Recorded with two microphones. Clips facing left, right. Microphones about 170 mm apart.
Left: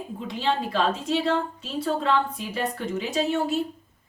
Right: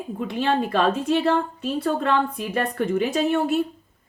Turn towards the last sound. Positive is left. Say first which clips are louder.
# right 3 dB
turn(degrees=-55)  # may be behind; listen again after turning